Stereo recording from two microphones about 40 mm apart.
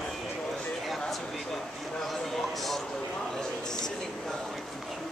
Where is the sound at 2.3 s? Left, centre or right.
Centre.